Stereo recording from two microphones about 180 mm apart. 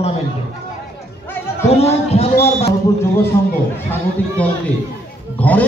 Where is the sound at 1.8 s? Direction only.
35° left (ahead or behind).